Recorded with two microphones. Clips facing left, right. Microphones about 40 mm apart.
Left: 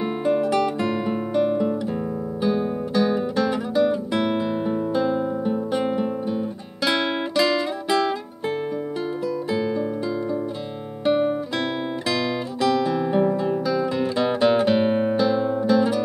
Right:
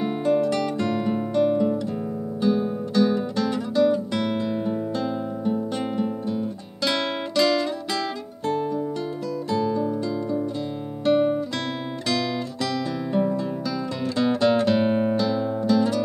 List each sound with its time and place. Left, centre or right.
0.0 s guitar: centre
2.4 s music: centre
11.1 s guitar: centre